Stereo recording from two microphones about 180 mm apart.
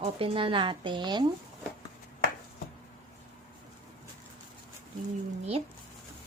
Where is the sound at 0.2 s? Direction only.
30° right (ahead or behind).